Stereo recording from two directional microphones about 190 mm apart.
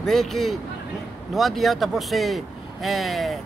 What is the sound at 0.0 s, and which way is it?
Speech, centre (ahead or behind).